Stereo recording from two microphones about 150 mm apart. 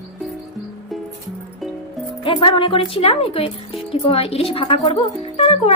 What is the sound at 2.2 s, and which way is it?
Speech, 35° left (ahead or behind).